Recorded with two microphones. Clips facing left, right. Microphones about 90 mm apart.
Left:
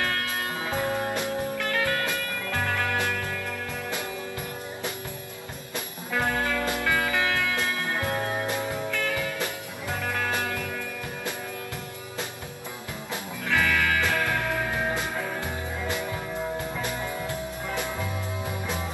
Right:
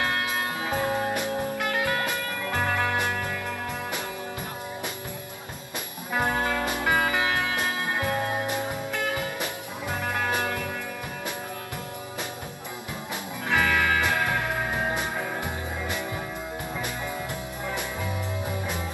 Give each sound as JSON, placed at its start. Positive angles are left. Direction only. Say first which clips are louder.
{"t": 0.0, "sound": "music", "louder": "right 2 dB", "side_deg": -20}
{"t": 6.1, "sound": "music", "louder": "right 1 dB", "side_deg": -20}
{"t": 13.5, "sound": "music", "louder": "right 1 dB", "side_deg": -20}